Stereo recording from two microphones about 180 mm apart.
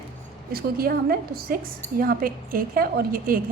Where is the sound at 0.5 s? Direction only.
55° right (ahead or behind).